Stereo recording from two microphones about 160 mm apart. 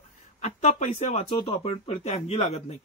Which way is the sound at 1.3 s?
35° left (ahead or behind).